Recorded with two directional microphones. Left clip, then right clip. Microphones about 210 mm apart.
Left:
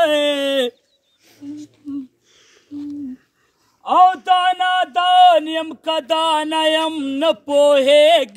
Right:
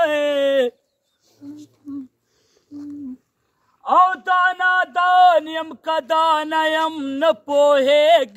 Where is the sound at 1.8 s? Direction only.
5° right (ahead or behind).